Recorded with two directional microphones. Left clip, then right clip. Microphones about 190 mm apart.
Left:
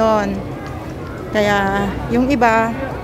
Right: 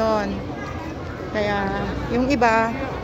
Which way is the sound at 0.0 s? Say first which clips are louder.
Left 6 dB; 25° left (ahead or behind).